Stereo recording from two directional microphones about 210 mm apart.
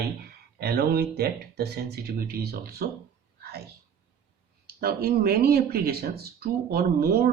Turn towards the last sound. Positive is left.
turn(degrees=-45)  # may be behind; listen again after turning